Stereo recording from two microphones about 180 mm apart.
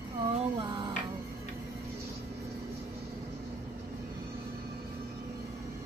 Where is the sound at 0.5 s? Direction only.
25° right (ahead or behind).